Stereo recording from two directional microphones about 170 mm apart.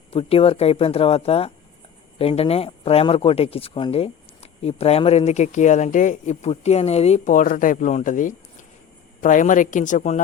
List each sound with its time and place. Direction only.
0.1 s speech: 35° left (ahead or behind)